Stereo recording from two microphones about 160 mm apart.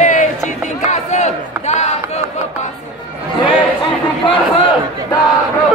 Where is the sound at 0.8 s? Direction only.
45° left (ahead or behind).